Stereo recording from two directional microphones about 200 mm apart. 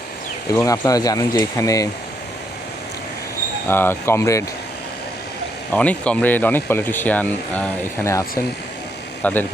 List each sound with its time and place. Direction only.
0.5 s speech: 15° left (ahead or behind)
3.7 s speech: 10° left (ahead or behind)
5.7 s speech: 5° left (ahead or behind)